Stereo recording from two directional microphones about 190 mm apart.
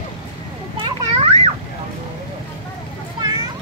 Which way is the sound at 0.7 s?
25° right (ahead or behind).